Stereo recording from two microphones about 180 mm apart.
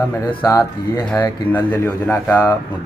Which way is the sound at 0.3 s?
25° left (ahead or behind).